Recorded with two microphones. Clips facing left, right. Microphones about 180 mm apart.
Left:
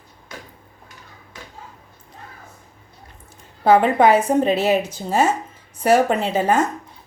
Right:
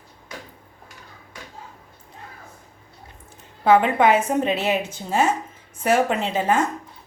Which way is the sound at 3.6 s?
35° left (ahead or behind).